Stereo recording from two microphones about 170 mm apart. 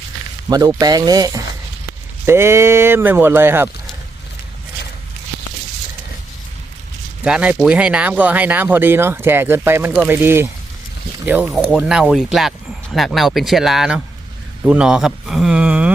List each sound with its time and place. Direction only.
0.4 s speech: 20° right (ahead or behind)
7.3 s speech: 5° right (ahead or behind)
11.4 s speech: centre (ahead or behind)